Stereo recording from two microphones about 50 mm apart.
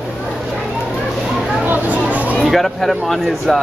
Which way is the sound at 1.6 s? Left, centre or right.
Right.